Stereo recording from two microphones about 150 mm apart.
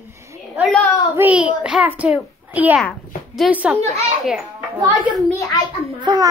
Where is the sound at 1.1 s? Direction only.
10° right (ahead or behind).